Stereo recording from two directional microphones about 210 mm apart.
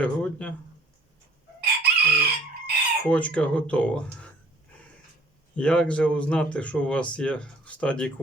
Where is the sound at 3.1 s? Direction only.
5° left (ahead or behind).